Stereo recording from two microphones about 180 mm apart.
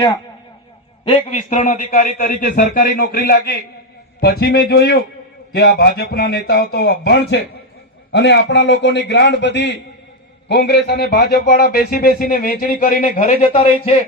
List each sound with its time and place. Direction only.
1.0 s a man's voice: 35° left (ahead or behind)